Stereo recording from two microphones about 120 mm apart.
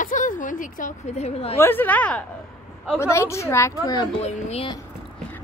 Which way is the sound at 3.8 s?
35° left (ahead or behind).